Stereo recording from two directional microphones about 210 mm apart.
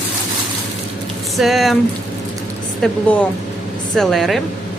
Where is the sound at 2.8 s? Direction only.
5° left (ahead or behind).